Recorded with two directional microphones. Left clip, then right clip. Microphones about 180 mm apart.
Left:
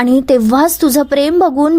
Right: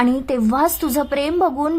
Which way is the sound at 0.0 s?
30° left (ahead or behind).